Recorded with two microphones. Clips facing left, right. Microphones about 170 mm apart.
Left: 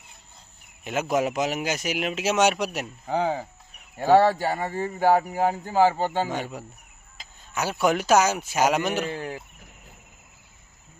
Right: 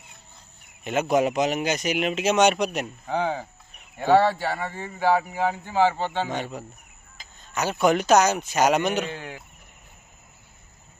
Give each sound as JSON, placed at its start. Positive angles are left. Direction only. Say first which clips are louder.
{"t": 0.8, "sound": "speech", "louder": "right 3 dB", "side_deg": 0}
{"t": 4.0, "sound": "speech", "louder": "left 1 dB", "side_deg": 40}
{"t": 6.2, "sound": "speech", "louder": "even", "side_deg": 10}
{"t": 9.1, "sound": "a sound", "louder": "left 4 dB", "side_deg": 35}